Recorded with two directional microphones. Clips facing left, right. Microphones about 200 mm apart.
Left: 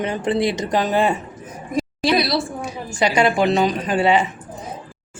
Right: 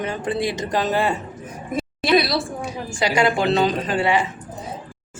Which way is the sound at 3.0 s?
20° left (ahead or behind).